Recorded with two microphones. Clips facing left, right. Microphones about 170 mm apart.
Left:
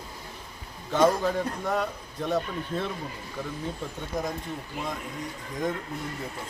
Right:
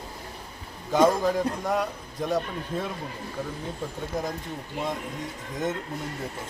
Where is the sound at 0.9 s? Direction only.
10° right (ahead or behind).